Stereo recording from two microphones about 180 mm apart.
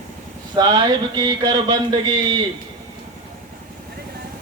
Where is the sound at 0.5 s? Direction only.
25° right (ahead or behind).